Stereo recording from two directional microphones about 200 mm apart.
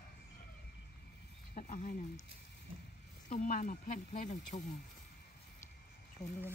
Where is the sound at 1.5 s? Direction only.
40° left (ahead or behind).